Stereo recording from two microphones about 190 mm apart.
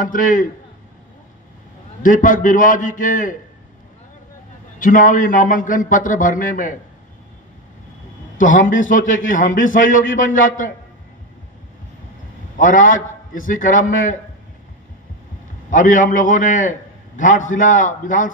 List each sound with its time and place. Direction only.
0.0 s a man's voice: 45° left (ahead or behind)
2.0 s a man's voice: 45° left (ahead or behind)
4.7 s a man's voice: 45° left (ahead or behind)
8.4 s a man's voice: 45° left (ahead or behind)
12.5 s a man's voice: 45° left (ahead or behind)
15.7 s a man's voice: 45° left (ahead or behind)